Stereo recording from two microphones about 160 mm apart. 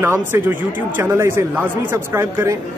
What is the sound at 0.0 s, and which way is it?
Speech, 15° right (ahead or behind).